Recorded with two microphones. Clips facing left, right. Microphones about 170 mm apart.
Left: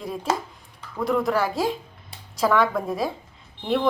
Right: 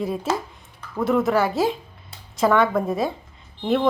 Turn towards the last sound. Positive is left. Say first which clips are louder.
# right 3 dB
turn(degrees=0)  # may be behind; listen again after turning